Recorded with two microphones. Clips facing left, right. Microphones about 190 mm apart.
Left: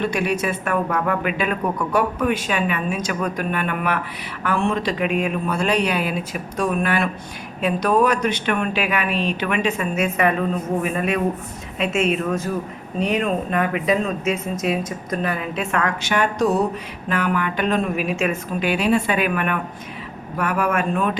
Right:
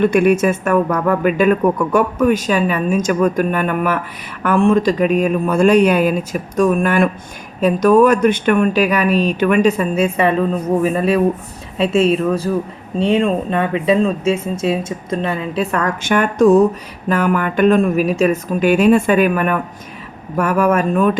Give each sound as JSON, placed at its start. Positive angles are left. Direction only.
{"t": 0.0, "sound": "a man's voice", "side_deg": -50}